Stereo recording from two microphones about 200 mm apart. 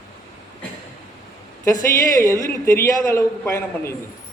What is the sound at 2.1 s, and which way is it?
A man's voice, 15° left (ahead or behind).